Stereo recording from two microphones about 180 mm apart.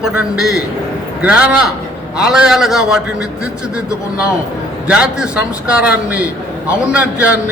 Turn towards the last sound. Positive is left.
turn(degrees=-10)  # may be behind; listen again after turning